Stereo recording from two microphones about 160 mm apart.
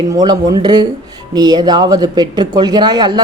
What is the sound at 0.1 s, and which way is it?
Speech, 25° right (ahead or behind).